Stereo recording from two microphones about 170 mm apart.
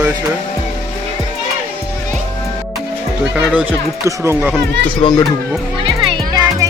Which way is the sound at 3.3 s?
10° right (ahead or behind).